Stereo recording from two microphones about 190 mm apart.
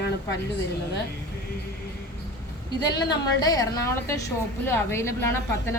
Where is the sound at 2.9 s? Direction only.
20° left (ahead or behind).